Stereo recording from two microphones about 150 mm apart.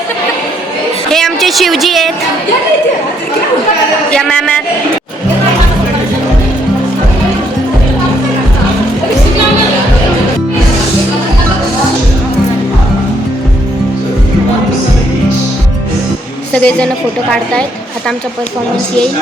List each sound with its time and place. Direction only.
1.1 s a woman's voice: centre (ahead or behind)
4.1 s speech: 5° left (ahead or behind)
16.5 s a woman's voice: 5° left (ahead or behind)